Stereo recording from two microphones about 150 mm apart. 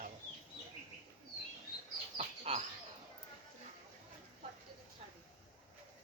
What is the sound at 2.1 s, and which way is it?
Bird, 40° right (ahead or behind).